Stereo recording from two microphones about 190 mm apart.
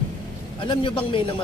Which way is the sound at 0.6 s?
25° left (ahead or behind).